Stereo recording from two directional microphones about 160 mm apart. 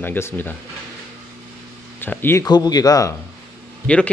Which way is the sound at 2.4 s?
25° left (ahead or behind).